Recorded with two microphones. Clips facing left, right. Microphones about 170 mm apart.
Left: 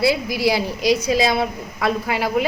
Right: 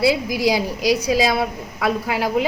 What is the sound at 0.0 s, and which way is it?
A woman's voice, 15° right (ahead or behind).